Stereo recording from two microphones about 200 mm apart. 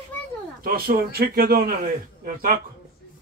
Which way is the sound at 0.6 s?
50° right (ahead or behind).